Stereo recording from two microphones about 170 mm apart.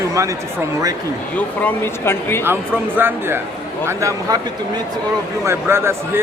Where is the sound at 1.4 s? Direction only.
10° left (ahead or behind).